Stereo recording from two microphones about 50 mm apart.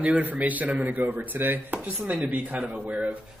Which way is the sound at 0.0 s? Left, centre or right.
Right.